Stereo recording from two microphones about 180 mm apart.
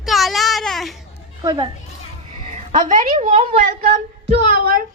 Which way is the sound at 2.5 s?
45° right (ahead or behind).